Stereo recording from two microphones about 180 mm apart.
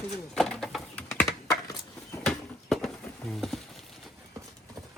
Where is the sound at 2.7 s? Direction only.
Centre (ahead or behind).